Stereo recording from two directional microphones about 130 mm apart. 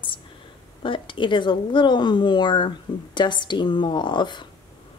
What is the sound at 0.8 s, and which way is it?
Speech, 40° left (ahead or behind).